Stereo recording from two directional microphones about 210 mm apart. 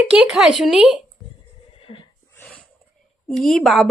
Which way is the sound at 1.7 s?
25° left (ahead or behind).